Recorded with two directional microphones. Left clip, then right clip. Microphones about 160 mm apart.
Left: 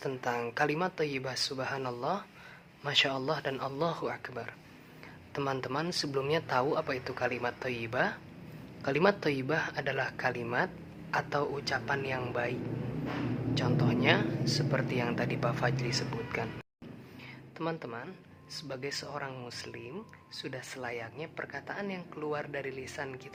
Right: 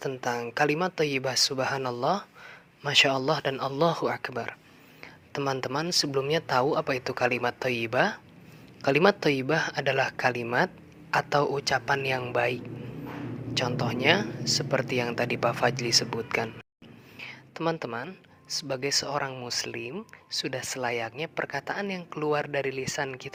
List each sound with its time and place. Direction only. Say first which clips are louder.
0.2 s speech: right 4 dB; 35° right (ahead or behind)